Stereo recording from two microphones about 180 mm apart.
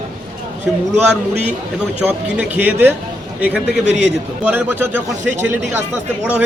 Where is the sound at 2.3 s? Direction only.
10° right (ahead or behind).